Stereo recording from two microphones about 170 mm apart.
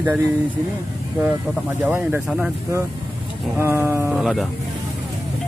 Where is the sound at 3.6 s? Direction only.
15° right (ahead or behind).